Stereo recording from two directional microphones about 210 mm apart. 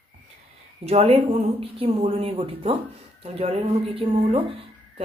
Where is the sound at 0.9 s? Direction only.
30° right (ahead or behind).